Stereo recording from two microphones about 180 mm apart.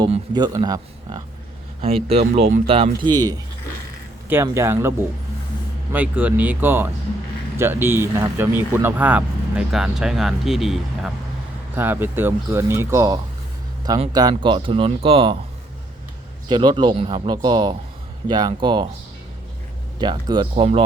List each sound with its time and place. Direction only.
0.3 s speech: 20° right (ahead or behind)
2.0 s speech: 35° right (ahead or behind)
16.5 s speech: 25° right (ahead or behind)
20.0 s speech: 25° right (ahead or behind)